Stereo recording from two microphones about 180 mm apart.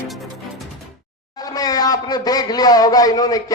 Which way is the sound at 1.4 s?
20° left (ahead or behind).